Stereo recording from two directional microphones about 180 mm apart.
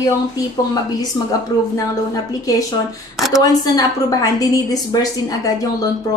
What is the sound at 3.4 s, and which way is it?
Speech, 20° left (ahead or behind).